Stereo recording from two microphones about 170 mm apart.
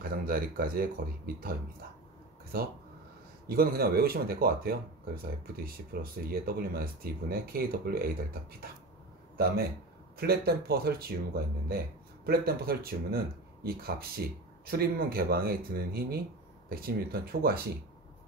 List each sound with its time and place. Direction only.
0.0 s speech: 60° right (ahead or behind)
3.4 s speech: 60° right (ahead or behind)
10.1 s speech: 65° right (ahead or behind)